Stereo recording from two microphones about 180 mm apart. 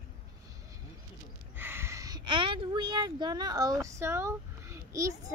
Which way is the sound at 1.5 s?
10° right (ahead or behind).